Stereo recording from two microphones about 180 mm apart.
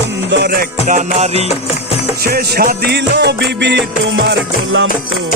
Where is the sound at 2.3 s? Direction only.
60° right (ahead or behind); by 4.8 s 80° right.